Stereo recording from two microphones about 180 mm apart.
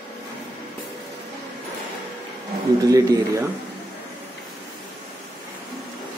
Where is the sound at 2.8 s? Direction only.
20° right (ahead or behind).